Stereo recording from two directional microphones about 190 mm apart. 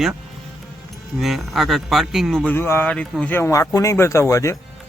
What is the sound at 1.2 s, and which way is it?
A man's voice, centre (ahead or behind).